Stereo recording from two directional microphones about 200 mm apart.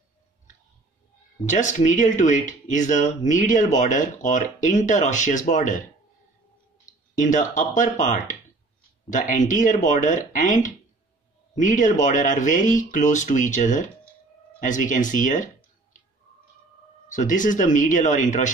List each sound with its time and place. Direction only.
1.4 s speech: 40° left (ahead or behind)
6.9 s speech: 40° left (ahead or behind)
17.1 s speech: 40° left (ahead or behind)